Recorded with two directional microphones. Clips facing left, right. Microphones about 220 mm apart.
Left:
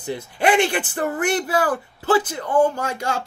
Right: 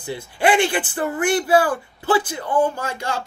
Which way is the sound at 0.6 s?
40° left (ahead or behind).